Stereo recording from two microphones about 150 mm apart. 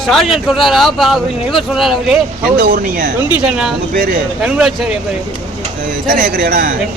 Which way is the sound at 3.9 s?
75° right (ahead or behind).